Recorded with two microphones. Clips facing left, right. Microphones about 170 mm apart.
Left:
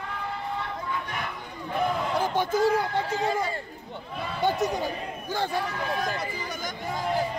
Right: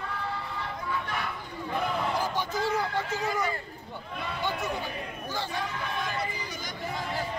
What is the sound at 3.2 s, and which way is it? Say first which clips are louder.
Speech: left 3 dB; 30° left (ahead or behind).